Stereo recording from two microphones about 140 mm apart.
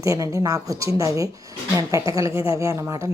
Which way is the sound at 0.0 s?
20° right (ahead or behind).